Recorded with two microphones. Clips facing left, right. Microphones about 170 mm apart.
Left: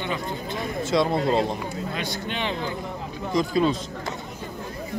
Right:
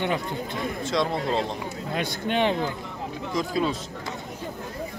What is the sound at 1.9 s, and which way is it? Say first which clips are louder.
Speech: right 4 dB; 50° right (ahead or behind).